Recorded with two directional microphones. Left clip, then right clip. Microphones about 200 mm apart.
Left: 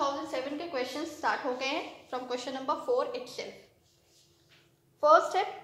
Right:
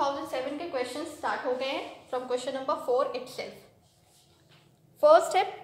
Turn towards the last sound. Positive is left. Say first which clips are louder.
# right 3 dB
turn(degrees=-10)  # may be behind; listen again after turning